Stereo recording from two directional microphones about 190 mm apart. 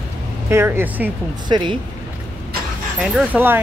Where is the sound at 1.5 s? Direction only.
25° right (ahead or behind).